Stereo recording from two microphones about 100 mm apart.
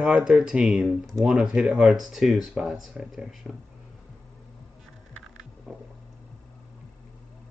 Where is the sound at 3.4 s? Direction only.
10° left (ahead or behind).